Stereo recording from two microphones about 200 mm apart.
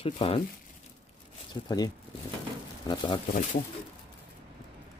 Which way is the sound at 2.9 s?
20° left (ahead or behind).